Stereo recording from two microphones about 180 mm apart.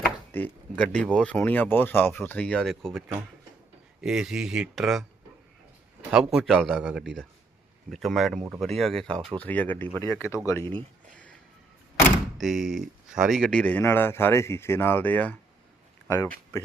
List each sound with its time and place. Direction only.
0.0 s speech: 10° left (ahead or behind)
4.0 s speech: 5° right (ahead or behind)
6.1 s speech: 5° right (ahead or behind); by 10.7 s 15° left (ahead or behind)
12.4 s speech: centre (ahead or behind); by 16.3 s 15° left (ahead or behind)